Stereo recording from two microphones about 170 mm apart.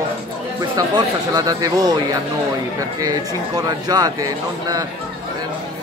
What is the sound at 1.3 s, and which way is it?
Speech, 20° right (ahead or behind).